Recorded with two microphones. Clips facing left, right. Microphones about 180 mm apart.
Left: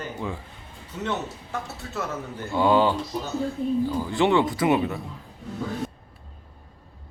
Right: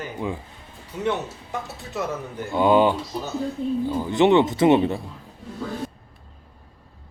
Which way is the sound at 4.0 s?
20° right (ahead or behind).